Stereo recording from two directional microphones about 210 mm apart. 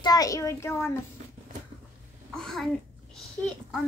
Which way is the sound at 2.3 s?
Centre (ahead or behind).